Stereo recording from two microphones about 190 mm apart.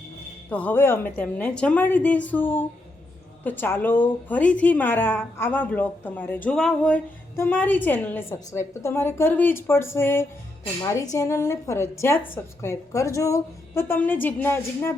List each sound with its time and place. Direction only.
0.5 s a woman's voice: 10° left (ahead or behind)